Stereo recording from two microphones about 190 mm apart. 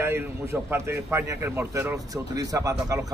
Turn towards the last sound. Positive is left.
turn(degrees=-20)  # may be behind; listen again after turning